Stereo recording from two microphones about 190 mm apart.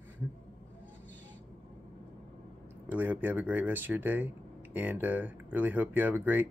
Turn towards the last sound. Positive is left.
turn(degrees=-10)  # may be behind; listen again after turning